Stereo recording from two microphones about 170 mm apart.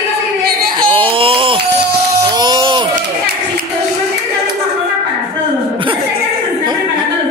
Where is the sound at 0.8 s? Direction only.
30° right (ahead or behind).